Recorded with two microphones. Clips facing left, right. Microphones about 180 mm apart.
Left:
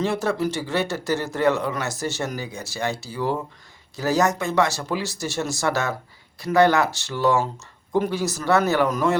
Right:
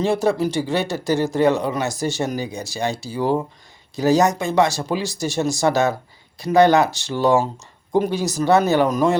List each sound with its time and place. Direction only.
0.0 s speech: 15° right (ahead or behind)